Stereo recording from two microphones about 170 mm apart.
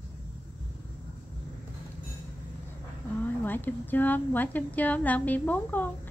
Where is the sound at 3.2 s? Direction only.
10° left (ahead or behind).